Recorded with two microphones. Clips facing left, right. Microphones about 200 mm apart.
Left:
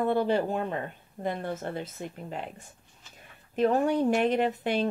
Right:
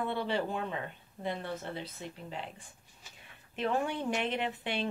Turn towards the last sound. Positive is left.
turn(degrees=40)  # may be behind; listen again after turning